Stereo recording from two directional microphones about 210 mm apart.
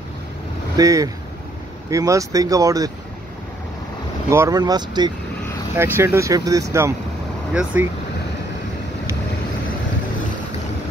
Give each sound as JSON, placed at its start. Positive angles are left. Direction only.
{"t": 0.7, "sound": "speech", "side_deg": -15}
{"t": 4.3, "sound": "speech", "side_deg": -15}